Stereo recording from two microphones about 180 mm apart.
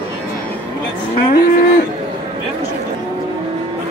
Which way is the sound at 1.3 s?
50° left (ahead or behind).